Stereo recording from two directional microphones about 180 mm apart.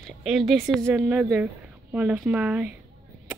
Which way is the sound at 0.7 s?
10° right (ahead or behind).